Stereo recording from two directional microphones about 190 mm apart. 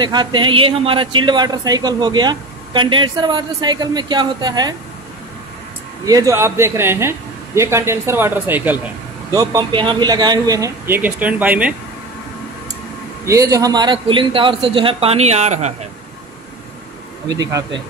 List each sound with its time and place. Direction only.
0.0 s a man's voice: 25° right (ahead or behind)
6.0 s a man's voice: 20° right (ahead or behind)
13.2 s a man's voice: 15° right (ahead or behind); by 15.7 s 35° right (ahead or behind)
17.3 s a man's voice: 20° right (ahead or behind)